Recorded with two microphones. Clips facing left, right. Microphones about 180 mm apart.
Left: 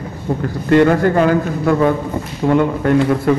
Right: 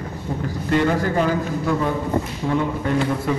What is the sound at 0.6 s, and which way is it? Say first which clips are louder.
A man's voice: left 8 dB; 65° left (ahead or behind).